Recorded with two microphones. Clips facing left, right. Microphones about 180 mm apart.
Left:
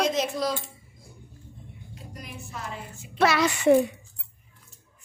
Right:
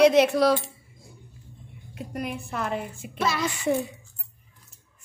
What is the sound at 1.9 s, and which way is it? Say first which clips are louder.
A woman's voice: right 11 dB; 60° right (ahead or behind).